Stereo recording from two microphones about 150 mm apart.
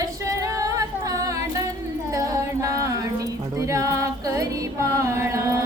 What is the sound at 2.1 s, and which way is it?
Music, 20° right (ahead or behind).